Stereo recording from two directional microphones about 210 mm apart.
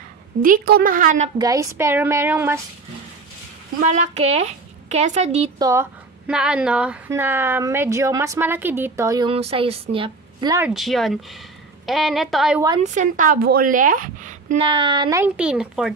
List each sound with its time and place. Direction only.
0.4 s a woman's voice: 45° right (ahead or behind)
1.4 s a woman's voice: 15° right (ahead or behind)
3.8 s a woman's voice: 35° right (ahead or behind)
5.6 s a woman's voice: 15° right (ahead or behind)
10.7 s a woman's voice: centre (ahead or behind)
12.8 s a woman's voice: 35° right (ahead or behind)
14.7 s a woman's voice: 25° right (ahead or behind); by 15.9 s 5° right (ahead or behind)